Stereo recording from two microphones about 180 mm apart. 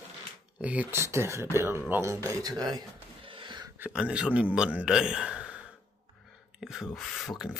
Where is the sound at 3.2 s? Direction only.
25° right (ahead or behind).